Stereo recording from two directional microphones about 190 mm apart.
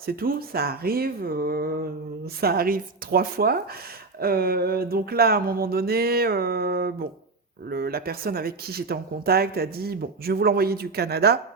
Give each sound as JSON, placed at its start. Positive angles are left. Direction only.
{"t": 0.0, "sound": "speech", "side_deg": -50}